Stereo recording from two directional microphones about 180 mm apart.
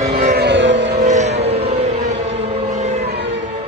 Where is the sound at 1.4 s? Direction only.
35° right (ahead or behind).